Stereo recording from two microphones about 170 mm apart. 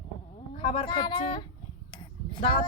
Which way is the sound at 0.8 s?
30° left (ahead or behind).